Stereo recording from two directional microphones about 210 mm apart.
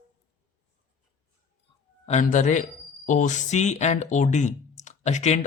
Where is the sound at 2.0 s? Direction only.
35° left (ahead or behind).